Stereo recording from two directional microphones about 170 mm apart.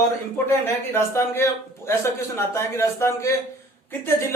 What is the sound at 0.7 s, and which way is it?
A man's voice, 15° left (ahead or behind).